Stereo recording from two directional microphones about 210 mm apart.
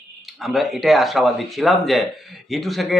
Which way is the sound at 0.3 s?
Centre (ahead or behind).